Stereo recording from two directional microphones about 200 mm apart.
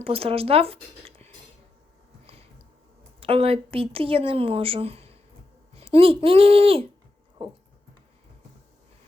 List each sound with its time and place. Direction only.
0.0 s speech: 30° right (ahead or behind)
2.2 s a sound: 30° right (ahead or behind)
3.2 s speech: 25° right (ahead or behind)